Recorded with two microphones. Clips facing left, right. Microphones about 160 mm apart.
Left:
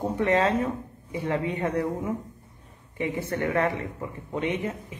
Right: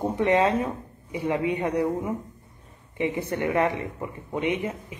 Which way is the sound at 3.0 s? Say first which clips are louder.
Right 2 dB; 20° right (ahead or behind).